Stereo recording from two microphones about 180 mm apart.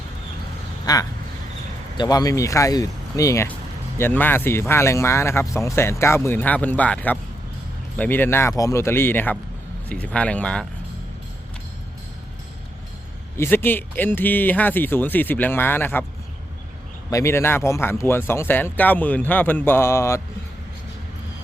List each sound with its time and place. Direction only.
0.9 s speech: 20° left (ahead or behind); by 10.7 s 5° left (ahead or behind)
13.3 s speech: 15° left (ahead or behind)
17.1 s speech: 15° left (ahead or behind)